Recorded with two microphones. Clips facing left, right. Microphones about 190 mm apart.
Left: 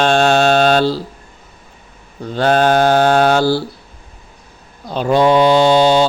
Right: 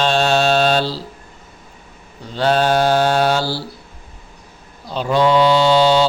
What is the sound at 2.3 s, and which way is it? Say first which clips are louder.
Mantra: left 3 dB; 50° left (ahead or behind).